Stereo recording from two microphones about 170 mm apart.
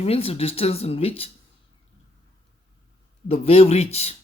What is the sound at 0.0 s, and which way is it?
Speech, 35° left (ahead or behind).